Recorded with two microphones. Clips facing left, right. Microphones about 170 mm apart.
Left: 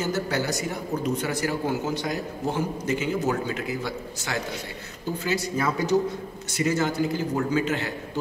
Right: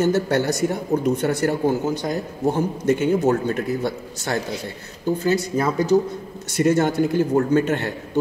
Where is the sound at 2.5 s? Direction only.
55° right (ahead or behind).